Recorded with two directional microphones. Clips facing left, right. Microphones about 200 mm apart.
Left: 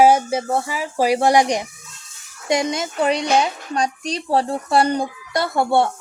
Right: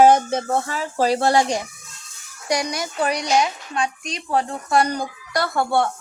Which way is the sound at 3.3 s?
35° left (ahead or behind).